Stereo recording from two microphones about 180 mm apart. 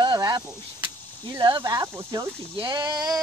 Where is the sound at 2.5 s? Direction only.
25° right (ahead or behind).